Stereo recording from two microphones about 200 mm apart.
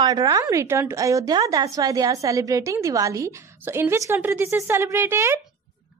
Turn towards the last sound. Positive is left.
turn(degrees=-10)  # may be behind; listen again after turning